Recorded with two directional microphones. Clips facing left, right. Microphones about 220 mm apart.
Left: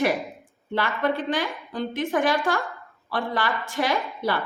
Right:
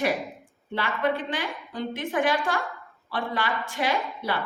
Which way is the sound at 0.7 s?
40° left (ahead or behind).